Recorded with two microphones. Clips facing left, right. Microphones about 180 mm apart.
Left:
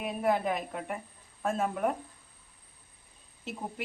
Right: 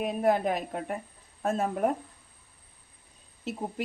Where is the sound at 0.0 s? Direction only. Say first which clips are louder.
Right 3 dB; 40° right (ahead or behind).